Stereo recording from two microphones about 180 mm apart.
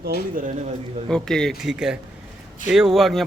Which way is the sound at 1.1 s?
5° left (ahead or behind).